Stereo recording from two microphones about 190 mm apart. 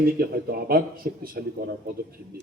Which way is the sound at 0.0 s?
55° right (ahead or behind).